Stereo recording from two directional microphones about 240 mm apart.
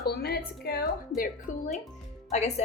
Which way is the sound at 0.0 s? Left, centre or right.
Left.